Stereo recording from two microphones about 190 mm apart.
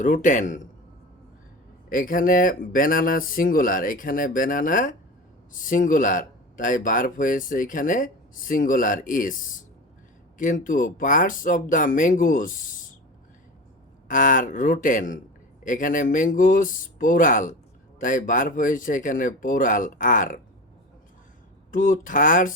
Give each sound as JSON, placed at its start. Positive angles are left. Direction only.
{"t": 0.0, "sound": "a man's voice", "side_deg": 40}
{"t": 1.9, "sound": "speech", "side_deg": 45}
{"t": 14.1, "sound": "speech", "side_deg": 45}
{"t": 21.7, "sound": "speech", "side_deg": 45}